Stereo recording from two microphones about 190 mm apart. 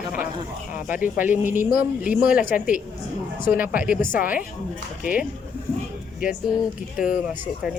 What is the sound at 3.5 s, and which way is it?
Speech, 10° right (ahead or behind).